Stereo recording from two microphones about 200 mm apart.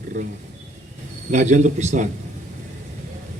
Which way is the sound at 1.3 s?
35° right (ahead or behind).